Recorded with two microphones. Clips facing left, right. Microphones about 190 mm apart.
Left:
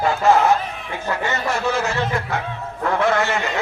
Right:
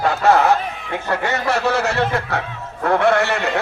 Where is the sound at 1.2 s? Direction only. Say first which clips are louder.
Right 2 dB; 65° right (ahead or behind).